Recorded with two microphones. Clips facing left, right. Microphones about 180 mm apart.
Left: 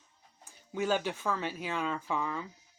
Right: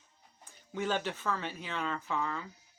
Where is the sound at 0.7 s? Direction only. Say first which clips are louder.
Left 3 dB; 10° left (ahead or behind).